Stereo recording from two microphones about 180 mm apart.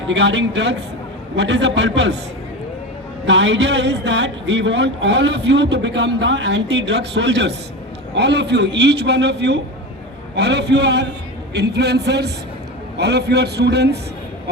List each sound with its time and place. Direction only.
0.1 s speech: 75° right (ahead or behind)
3.2 s a man's voice: 75° right (ahead or behind)